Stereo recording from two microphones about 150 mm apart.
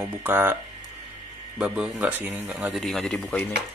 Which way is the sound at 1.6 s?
5° right (ahead or behind).